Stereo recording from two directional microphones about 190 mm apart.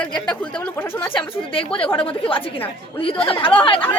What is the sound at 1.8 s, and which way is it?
A woman's voice, 25° left (ahead or behind).